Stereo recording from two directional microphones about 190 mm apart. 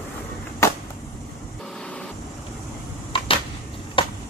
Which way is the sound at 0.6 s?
15° left (ahead or behind).